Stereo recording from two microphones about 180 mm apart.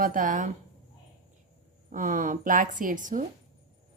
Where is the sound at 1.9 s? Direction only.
45° right (ahead or behind).